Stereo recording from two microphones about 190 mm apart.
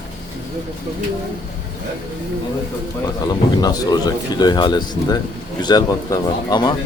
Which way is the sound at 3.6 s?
20° left (ahead or behind).